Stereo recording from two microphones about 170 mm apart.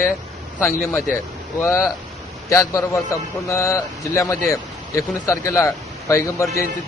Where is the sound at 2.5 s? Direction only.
15° left (ahead or behind).